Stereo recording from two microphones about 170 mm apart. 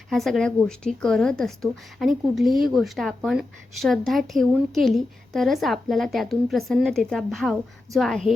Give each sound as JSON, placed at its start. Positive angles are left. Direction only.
{"t": 0.1, "sound": "speech", "side_deg": 0}